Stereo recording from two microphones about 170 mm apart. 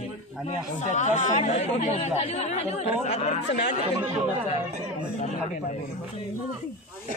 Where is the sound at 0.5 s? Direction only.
45° left (ahead or behind).